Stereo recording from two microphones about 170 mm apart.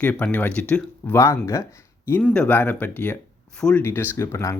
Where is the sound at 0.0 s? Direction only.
10° left (ahead or behind).